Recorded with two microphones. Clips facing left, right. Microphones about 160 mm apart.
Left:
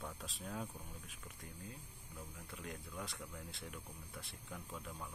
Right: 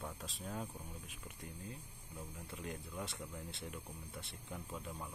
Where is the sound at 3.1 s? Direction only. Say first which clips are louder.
Right 2 dB; 20° right (ahead or behind).